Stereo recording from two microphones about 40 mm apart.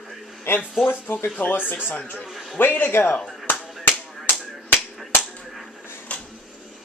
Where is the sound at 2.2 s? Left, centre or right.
Centre.